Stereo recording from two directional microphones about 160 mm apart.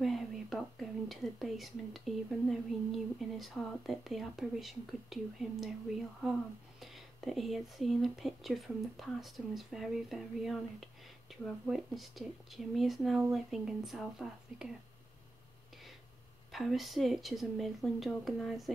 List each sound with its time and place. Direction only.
0.0 s speech: centre (ahead or behind)
6.8 s speech: centre (ahead or behind)
16.5 s speech: centre (ahead or behind)